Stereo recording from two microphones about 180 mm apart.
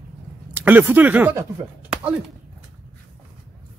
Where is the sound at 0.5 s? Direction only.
10° right (ahead or behind).